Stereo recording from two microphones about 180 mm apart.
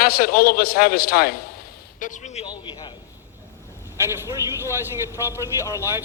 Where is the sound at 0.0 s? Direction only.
60° left (ahead or behind).